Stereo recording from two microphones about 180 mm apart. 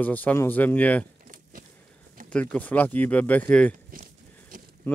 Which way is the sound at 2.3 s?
5° left (ahead or behind).